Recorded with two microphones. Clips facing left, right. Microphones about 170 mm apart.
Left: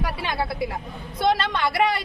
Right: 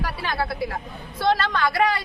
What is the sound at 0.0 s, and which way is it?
Vehicle, 20° left (ahead or behind).